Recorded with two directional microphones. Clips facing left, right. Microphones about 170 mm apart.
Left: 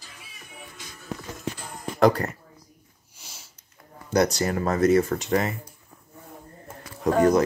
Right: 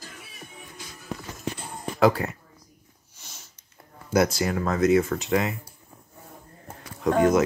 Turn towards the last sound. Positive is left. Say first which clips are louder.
# left 1 dB
turn(degrees=0)  # may be behind; listen again after turning